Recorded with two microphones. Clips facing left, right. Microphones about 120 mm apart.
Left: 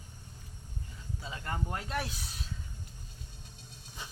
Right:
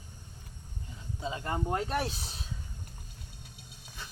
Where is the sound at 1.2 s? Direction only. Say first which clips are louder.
Right 5 dB; 25° right (ahead or behind).